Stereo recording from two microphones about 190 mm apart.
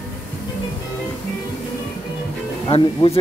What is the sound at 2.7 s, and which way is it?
Speech, 30° left (ahead or behind).